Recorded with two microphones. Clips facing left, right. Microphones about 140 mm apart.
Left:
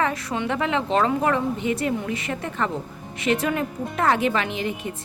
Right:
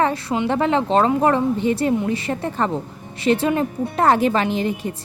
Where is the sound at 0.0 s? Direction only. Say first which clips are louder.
Right 5 dB; 30° right (ahead or behind).